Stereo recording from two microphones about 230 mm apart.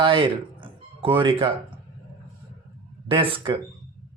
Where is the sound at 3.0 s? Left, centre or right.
Right.